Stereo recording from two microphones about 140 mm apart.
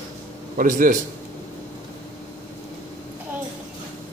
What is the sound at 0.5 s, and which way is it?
Speech, 75° right (ahead or behind).